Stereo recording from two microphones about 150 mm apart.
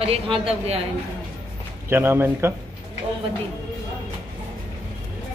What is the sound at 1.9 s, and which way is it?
Speech, 15° right (ahead or behind).